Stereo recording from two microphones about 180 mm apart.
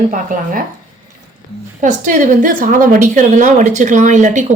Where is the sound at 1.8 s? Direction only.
45° right (ahead or behind).